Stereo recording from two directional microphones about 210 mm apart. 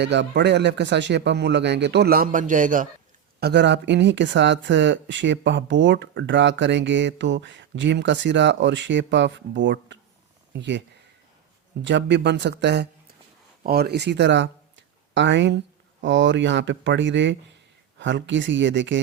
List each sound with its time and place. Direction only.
0.0 s speech: 55° right (ahead or behind); by 2.8 s 40° right (ahead or behind)
3.4 s speech: 55° right (ahead or behind)